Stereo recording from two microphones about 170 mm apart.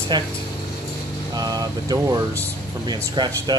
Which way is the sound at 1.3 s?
25° right (ahead or behind).